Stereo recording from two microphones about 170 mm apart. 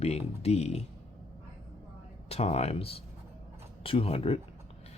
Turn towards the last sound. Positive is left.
turn(degrees=35)  # may be behind; listen again after turning